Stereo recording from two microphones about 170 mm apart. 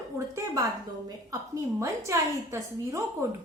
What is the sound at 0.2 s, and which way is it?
A woman's voice, 20° right (ahead or behind).